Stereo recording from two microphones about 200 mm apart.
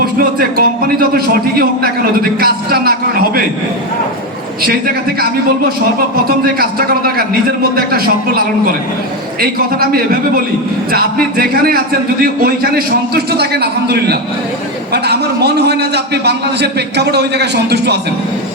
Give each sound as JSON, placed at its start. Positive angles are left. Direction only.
{"t": 0.0, "sound": "a man's voice", "side_deg": -45}
{"t": 6.2, "sound": "a man's voice", "side_deg": -50}